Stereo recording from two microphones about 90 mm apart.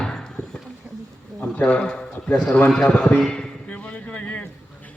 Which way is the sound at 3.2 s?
10° left (ahead or behind).